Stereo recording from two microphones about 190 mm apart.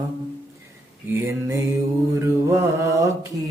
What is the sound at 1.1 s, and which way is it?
Mantra, 15° right (ahead or behind).